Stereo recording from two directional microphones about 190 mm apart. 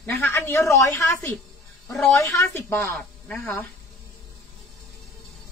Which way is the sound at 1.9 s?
Centre (ahead or behind).